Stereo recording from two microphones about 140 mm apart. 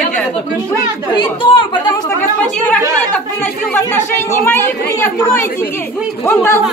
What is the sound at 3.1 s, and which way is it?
A man's voice, 10° left (ahead or behind).